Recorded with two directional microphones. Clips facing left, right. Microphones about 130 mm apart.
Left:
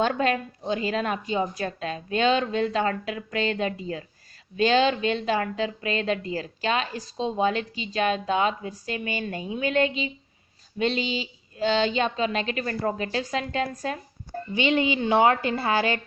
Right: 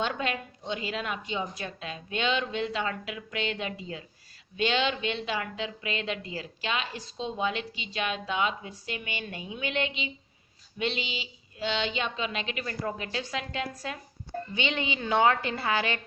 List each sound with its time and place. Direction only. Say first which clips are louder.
0.0 s a woman's voice: left 7 dB; 45° left (ahead or behind)